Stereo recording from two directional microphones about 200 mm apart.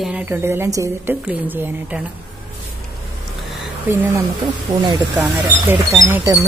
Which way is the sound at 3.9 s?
10° right (ahead or behind).